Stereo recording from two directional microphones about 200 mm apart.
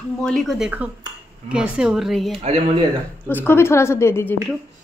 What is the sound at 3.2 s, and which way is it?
A woman's voice, 10° left (ahead or behind).